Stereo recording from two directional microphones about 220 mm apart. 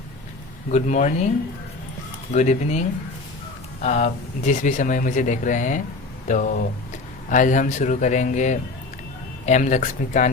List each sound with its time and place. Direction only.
0.7 s speech: 35° left (ahead or behind)
2.3 s speech: 30° left (ahead or behind)